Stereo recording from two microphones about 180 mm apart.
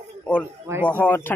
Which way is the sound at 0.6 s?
10° right (ahead or behind).